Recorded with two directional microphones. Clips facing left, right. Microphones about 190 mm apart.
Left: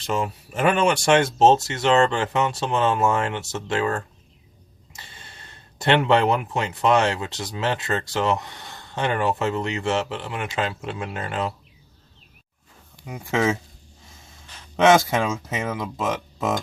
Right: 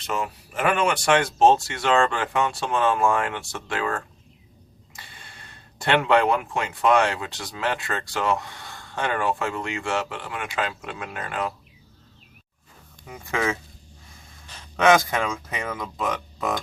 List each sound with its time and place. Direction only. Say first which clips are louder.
0.1 s speech: left 3 dB; 30° left (ahead or behind)
13.0 s speech: left 4 dB; 15° left (ahead or behind)
14.8 s speech: left 2 dB; 25° left (ahead or behind)